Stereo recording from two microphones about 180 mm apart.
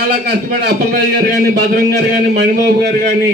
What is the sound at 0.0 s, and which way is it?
A man's voice, 60° right (ahead or behind).